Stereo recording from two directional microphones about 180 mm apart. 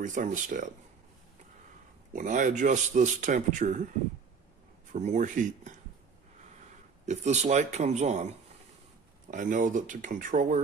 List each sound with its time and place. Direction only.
0.0 s a man's voice: 45° right (ahead or behind)
2.1 s a man's voice: 45° right (ahead or behind)
4.9 s a man's voice: 40° right (ahead or behind)
7.1 s speech: 40° right (ahead or behind)
9.3 s a man's voice: 45° right (ahead or behind)